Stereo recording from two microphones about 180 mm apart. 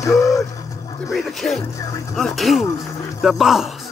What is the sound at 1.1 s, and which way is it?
Speech, centre (ahead or behind).